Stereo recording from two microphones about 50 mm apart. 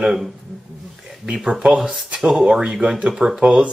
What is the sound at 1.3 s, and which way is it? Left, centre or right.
Speech, centre.